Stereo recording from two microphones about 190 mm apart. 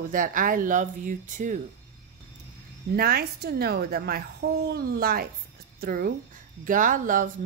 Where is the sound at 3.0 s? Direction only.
55° right (ahead or behind).